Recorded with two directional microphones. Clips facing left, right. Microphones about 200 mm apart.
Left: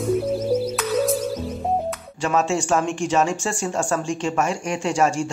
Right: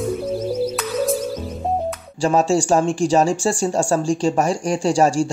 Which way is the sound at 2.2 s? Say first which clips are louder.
Right 4 dB; 35° right (ahead or behind).